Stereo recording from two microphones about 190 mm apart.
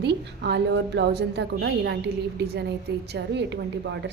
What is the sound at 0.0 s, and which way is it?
A woman's voice, 65° right (ahead or behind).